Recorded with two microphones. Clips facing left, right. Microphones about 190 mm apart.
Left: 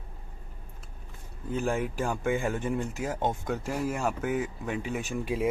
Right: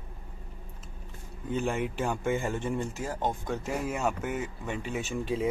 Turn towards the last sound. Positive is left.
turn(degrees=10)  # may be behind; listen again after turning